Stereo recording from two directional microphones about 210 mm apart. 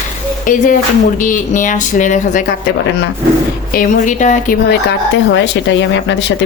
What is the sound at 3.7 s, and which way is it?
Speech, 40° left (ahead or behind).